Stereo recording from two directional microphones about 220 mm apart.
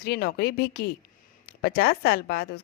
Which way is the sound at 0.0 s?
45° left (ahead or behind).